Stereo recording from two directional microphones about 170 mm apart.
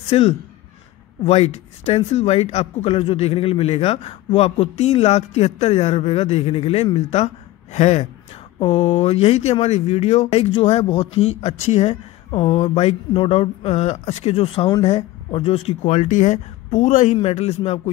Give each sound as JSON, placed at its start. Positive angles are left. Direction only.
{"t": 0.1, "sound": "speech", "side_deg": 40}